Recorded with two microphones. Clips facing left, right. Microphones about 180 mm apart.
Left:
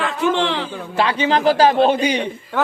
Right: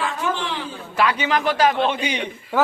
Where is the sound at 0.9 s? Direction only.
30° left (ahead or behind).